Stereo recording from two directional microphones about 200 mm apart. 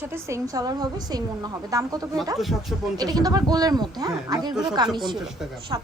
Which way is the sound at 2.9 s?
20° right (ahead or behind).